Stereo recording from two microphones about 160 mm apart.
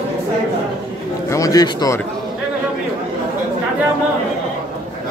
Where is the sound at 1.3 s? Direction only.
20° left (ahead or behind).